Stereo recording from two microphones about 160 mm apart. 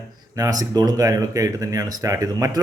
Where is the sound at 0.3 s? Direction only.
20° right (ahead or behind).